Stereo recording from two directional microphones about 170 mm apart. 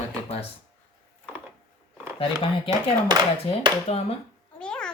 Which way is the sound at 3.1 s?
25° right (ahead or behind).